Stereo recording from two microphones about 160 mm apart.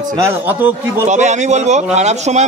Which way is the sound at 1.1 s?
50° right (ahead or behind).